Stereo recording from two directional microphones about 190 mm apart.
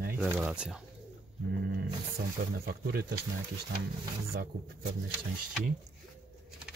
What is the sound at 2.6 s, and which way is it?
Speech, 55° right (ahead or behind).